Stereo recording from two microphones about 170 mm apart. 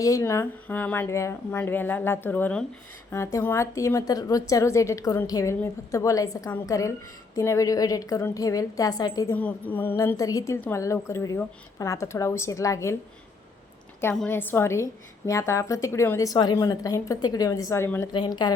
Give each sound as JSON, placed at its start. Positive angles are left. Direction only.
{"t": 0.0, "sound": "a woman's voice", "side_deg": 20}
{"t": 9.3, "sound": "a woman's voice", "side_deg": 10}
{"t": 14.0, "sound": "a woman's voice", "side_deg": 10}
{"t": 18.1, "sound": "a woman's voice", "side_deg": 25}